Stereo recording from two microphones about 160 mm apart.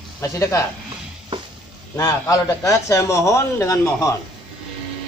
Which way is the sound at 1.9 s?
20° left (ahead or behind).